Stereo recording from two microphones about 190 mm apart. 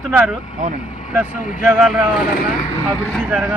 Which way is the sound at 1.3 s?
45° left (ahead or behind).